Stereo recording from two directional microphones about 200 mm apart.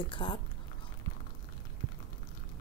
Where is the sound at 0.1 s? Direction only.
25° left (ahead or behind).